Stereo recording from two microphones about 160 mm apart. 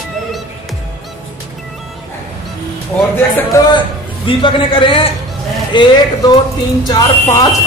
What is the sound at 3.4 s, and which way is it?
A man's voice, 25° left (ahead or behind).